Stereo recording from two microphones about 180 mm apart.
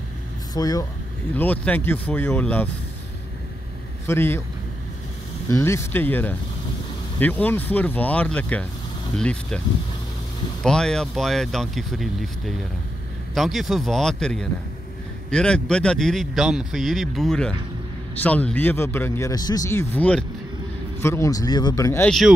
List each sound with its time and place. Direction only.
0.6 s speech: 20° left (ahead or behind)
1.3 s speech: 10° left (ahead or behind)
4.1 s speech: 10° left (ahead or behind)
5.5 s speech: 15° left (ahead or behind)
10.6 s speech: 5° left (ahead or behind)
22.0 s speech: centre (ahead or behind)